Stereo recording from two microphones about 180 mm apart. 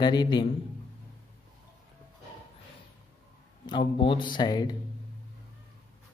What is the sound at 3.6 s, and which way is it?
A man's voice, 25° left (ahead or behind).